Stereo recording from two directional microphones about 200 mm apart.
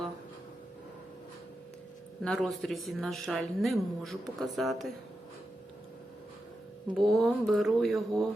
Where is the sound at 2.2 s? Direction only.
Centre (ahead or behind).